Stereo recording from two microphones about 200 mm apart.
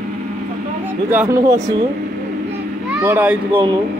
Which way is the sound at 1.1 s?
15° right (ahead or behind).